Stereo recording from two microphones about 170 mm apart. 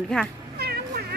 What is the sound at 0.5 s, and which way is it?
Cat, 65° right (ahead or behind).